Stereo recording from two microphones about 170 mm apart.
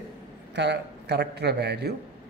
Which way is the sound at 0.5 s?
90° right.